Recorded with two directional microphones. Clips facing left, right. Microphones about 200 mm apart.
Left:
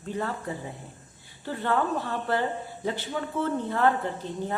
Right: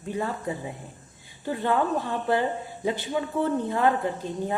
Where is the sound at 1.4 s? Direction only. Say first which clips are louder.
Right 2 dB; 15° right (ahead or behind).